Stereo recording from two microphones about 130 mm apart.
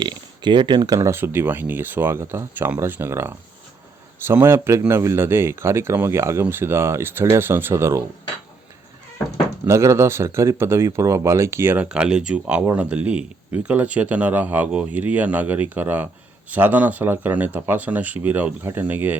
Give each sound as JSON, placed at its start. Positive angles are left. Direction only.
{"t": 0.0, "sound": "a man's voice", "side_deg": -35}
{"t": 9.6, "sound": "a man's voice", "side_deg": -20}
{"t": 11.9, "sound": "speech", "side_deg": -5}